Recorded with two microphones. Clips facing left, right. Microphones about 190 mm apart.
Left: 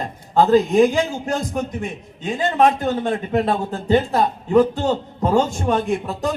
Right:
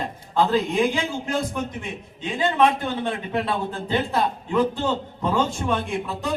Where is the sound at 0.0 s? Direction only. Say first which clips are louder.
Left 5 dB; 45° left (ahead or behind).